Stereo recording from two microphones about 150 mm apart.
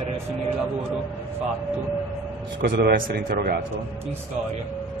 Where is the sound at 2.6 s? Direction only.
85° right.